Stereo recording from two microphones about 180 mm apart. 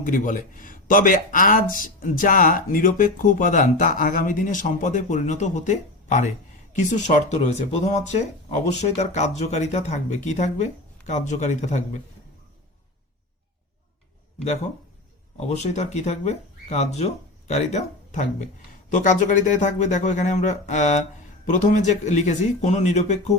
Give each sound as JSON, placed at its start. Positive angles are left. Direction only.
{"t": 0.0, "sound": "speech", "side_deg": 45}
{"t": 15.4, "sound": "speech", "side_deg": 35}